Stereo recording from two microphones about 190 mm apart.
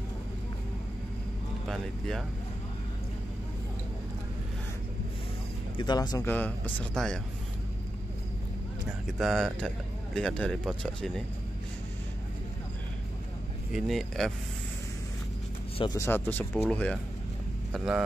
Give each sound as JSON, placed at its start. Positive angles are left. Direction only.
{"t": 1.7, "sound": "speech", "side_deg": 0}
{"t": 5.8, "sound": "speech", "side_deg": 20}
{"t": 9.0, "sound": "speech", "side_deg": 0}
{"t": 13.7, "sound": "speech", "side_deg": 0}
{"t": 15.8, "sound": "speech", "side_deg": 20}
{"t": 16.1, "sound": "speech", "side_deg": 10}